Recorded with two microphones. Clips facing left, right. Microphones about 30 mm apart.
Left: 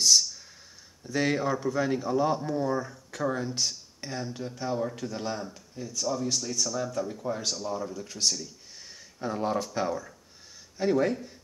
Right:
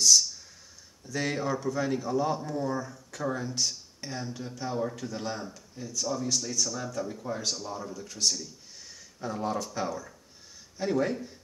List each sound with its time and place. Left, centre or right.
1.0 s speech: left
1.3 s speech: centre
8.8 s a sound: left
9.8 s speech: centre